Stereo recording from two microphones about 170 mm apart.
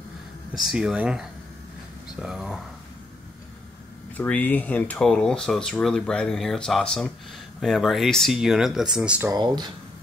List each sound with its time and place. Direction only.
0.7 s speech: 5° right (ahead or behind)
2.2 s speech: 5° right (ahead or behind)
4.2 s speech: 10° left (ahead or behind); by 9.3 s 5° right (ahead or behind)
9.3 s speech: 25° right (ahead or behind)